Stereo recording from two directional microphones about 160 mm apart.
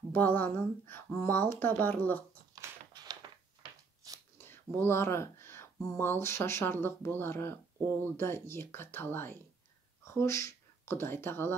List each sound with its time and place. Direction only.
0.1 s speech: 10° left (ahead or behind)
2.5 s a sound: 25° right (ahead or behind)
4.4 s whispering: 15° left (ahead or behind)
5.9 s speech: 15° left (ahead or behind)